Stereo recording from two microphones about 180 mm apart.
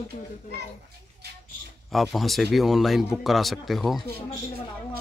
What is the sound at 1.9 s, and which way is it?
Speech, centre (ahead or behind).